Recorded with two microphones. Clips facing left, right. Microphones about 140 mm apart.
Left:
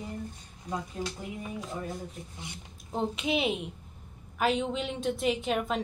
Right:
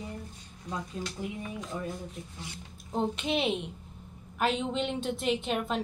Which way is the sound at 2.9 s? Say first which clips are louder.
Even; centre (ahead or behind).